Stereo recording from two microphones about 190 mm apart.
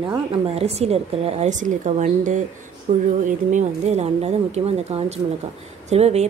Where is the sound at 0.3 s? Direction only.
35° right (ahead or behind).